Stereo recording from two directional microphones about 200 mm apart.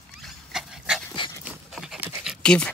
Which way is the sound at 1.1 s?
25° left (ahead or behind).